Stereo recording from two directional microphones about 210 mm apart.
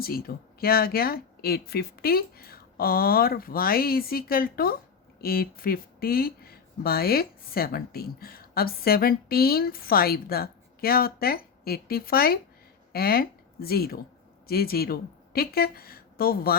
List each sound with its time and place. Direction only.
0.0 s speech: 45° left (ahead or behind)